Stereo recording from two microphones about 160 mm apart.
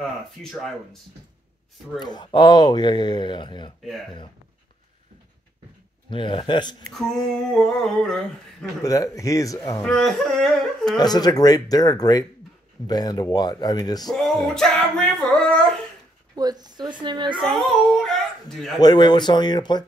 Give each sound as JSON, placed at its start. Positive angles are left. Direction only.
{"t": 0.0, "sound": "humming", "side_deg": 0}
{"t": 2.0, "sound": "speech", "side_deg": 25}
{"t": 6.0, "sound": "a man's voice", "side_deg": 30}
{"t": 7.5, "sound": "humming", "side_deg": 0}
{"t": 8.8, "sound": "speech", "side_deg": 20}
{"t": 9.8, "sound": "humming", "side_deg": 5}
{"t": 10.9, "sound": "speech", "side_deg": 25}
{"t": 14.0, "sound": "music", "side_deg": 0}
{"t": 16.3, "sound": "a woman's voice", "side_deg": -25}
{"t": 17.6, "sound": "speech", "side_deg": 0}
{"t": 18.8, "sound": "speech", "side_deg": 25}